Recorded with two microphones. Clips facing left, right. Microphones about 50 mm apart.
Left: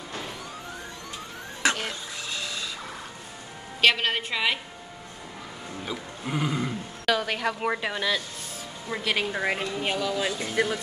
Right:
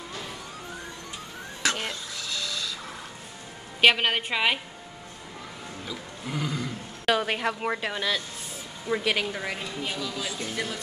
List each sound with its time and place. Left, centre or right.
1.6 s a sound: left
2.2 s printer: left
3.8 s a woman's voice: centre
5.9 s a sound: centre
7.1 s a woman's voice: centre
7.6 s a woman's voice: centre
9.2 s speech: centre